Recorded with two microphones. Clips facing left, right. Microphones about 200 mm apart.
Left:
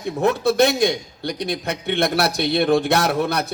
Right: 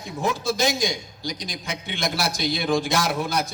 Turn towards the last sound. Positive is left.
turn(degrees=60)  # may be behind; listen again after turning